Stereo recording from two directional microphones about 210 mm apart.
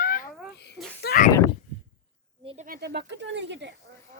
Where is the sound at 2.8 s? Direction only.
55° right (ahead or behind).